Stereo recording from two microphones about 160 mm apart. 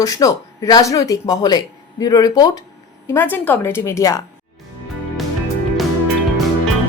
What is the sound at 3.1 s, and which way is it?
Speech, 10° left (ahead or behind).